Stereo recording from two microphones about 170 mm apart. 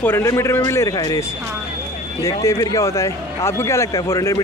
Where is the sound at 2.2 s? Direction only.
20° left (ahead or behind).